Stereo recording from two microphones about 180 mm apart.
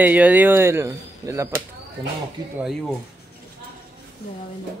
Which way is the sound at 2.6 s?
Centre (ahead or behind).